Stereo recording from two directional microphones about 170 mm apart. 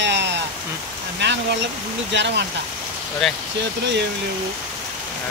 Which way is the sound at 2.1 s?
90° right.